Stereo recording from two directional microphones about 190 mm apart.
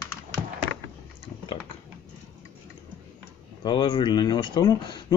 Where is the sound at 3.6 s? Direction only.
25° left (ahead or behind).